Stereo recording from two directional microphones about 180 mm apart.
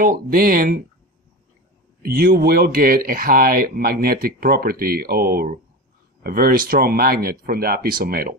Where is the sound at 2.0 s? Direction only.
55° right (ahead or behind).